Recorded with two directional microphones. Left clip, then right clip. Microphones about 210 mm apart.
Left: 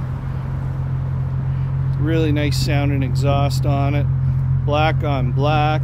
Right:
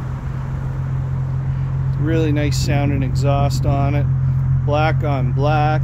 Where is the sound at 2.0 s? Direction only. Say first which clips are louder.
Even; 5° right (ahead or behind).